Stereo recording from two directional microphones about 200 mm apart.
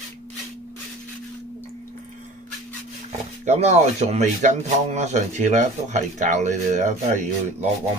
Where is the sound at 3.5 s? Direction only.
35° right (ahead or behind).